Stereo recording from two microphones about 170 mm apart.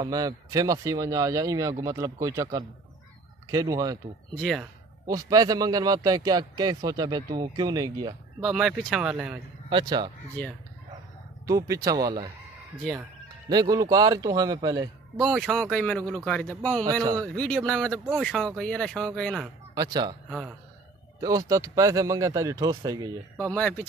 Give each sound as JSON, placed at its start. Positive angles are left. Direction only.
{"t": 0.0, "sound": "speech", "side_deg": -20}
{"t": 4.4, "sound": "speech", "side_deg": 0}
{"t": 5.0, "sound": "speech", "side_deg": -20}
{"t": 8.4, "sound": "speech", "side_deg": 0}
{"t": 9.7, "sound": "speech", "side_deg": -25}
{"t": 10.4, "sound": "speech", "side_deg": 10}
{"t": 11.4, "sound": "speech", "side_deg": -20}
{"t": 13.5, "sound": "speech", "side_deg": -25}
{"t": 15.3, "sound": "speech", "side_deg": 5}
{"t": 17.9, "sound": "speech", "side_deg": -5}
{"t": 19.7, "sound": "speech", "side_deg": -25}
{"t": 20.2, "sound": "a man's voice", "side_deg": -5}
{"t": 21.2, "sound": "speech", "side_deg": -20}
{"t": 23.5, "sound": "speech", "side_deg": 5}